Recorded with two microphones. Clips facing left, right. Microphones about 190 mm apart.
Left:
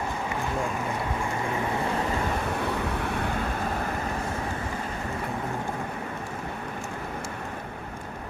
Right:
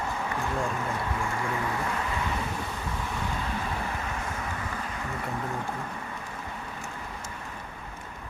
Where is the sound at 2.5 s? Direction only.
65° left (ahead or behind).